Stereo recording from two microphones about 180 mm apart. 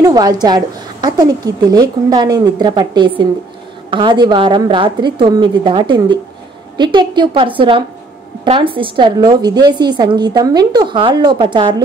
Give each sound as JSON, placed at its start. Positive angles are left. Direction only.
{"t": 0.0, "sound": "a woman's voice", "side_deg": -20}